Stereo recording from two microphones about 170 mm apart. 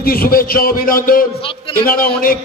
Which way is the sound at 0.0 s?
60° left (ahead or behind).